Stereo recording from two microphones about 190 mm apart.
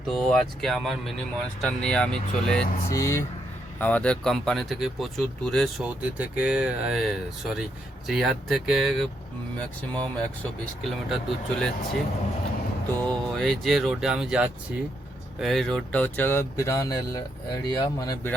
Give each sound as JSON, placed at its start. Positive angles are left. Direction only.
{"t": 0.1, "sound": "speech", "side_deg": 5}
{"t": 2.9, "sound": "speech", "side_deg": 15}
{"t": 13.1, "sound": "speech", "side_deg": 5}